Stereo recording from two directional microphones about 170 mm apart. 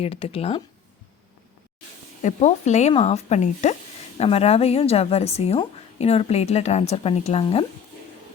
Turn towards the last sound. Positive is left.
turn(degrees=35)  # may be behind; listen again after turning